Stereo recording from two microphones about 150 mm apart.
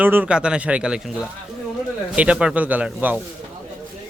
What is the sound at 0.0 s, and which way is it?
Speech, 10° right (ahead or behind).